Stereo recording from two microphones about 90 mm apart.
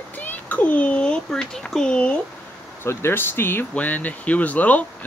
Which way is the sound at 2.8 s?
25° left (ahead or behind).